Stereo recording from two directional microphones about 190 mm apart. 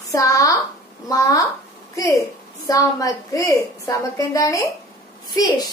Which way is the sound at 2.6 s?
20° left (ahead or behind).